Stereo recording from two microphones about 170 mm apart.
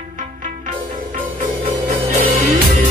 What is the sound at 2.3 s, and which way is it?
Music, 45° right (ahead or behind).